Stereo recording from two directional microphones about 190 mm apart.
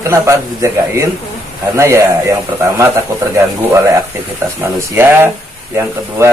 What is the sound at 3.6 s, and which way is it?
A man's voice, 15° right (ahead or behind).